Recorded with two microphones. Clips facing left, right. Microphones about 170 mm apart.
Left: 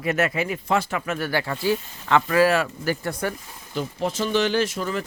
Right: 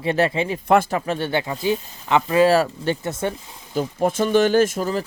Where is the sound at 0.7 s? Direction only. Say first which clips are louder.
Right 8 dB; 50° right (ahead or behind).